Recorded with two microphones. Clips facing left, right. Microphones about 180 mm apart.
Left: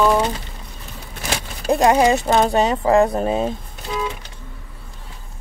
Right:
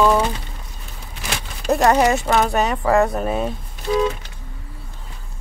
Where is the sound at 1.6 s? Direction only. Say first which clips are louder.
Left 1 dB; 15° left (ahead or behind).